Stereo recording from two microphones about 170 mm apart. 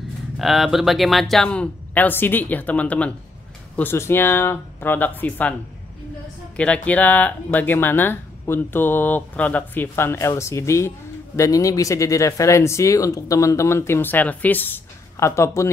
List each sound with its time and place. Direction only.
0.4 s speech: centre (ahead or behind)
6.5 s speech: 5° left (ahead or behind)